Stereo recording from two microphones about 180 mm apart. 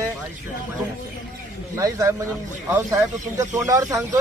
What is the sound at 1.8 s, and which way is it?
Speech, 20° right (ahead or behind).